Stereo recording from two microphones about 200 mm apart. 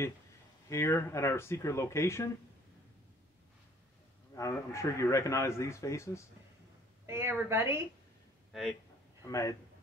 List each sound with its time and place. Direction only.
0.7 s a man's voice: 15° left (ahead or behind)
4.4 s a man's voice: 15° left (ahead or behind)
7.1 s a woman's voice: 15° right (ahead or behind)
9.2 s a man's voice: 15° left (ahead or behind)